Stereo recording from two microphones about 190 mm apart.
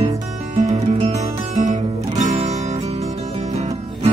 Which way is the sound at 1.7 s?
35° right (ahead or behind).